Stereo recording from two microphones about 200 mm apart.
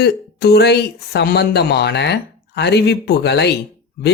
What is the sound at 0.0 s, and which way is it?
Speech, 55° left (ahead or behind).